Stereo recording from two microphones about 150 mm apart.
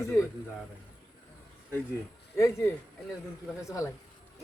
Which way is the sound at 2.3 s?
15° left (ahead or behind).